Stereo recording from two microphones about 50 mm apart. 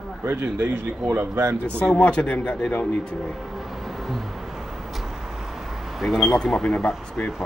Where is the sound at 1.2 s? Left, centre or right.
Right.